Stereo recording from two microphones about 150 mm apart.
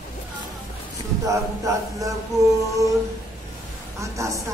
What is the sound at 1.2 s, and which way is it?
Mantra, 20° right (ahead or behind).